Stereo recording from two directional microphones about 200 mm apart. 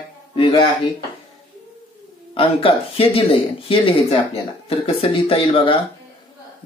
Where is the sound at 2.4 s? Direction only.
25° left (ahead or behind).